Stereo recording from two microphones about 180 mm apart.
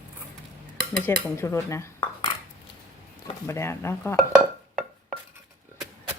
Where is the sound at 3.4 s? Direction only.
15° left (ahead or behind).